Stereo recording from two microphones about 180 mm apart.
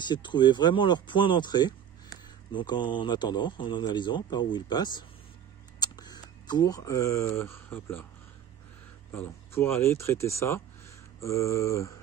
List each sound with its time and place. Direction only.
0.1 s speech: 25° left (ahead or behind)
9.1 s speech: 10° left (ahead or behind)